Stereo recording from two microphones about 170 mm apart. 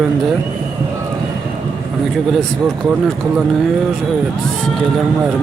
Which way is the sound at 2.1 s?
Centre (ahead or behind).